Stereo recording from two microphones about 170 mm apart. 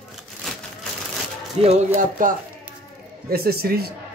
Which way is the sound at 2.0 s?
50° right (ahead or behind).